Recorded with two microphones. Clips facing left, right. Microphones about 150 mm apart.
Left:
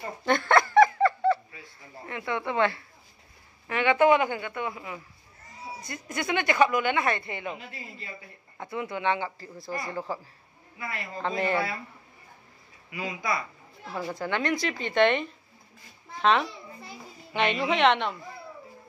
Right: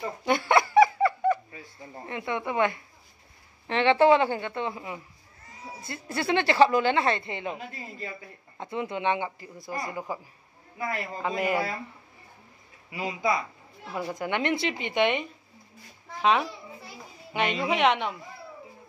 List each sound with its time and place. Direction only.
0.2 s a sound: 10° right (ahead or behind)
2.0 s speech: 20° right (ahead or behind)
8.5 s speech: 25° right (ahead or behind)
11.2 s speech: 10° right (ahead or behind)
12.9 s a child's voice: 25° right (ahead or behind); by 18.1 s 10° right (ahead or behind)